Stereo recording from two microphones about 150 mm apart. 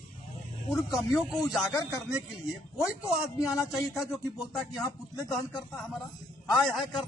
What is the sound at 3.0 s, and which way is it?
Speech, 20° left (ahead or behind).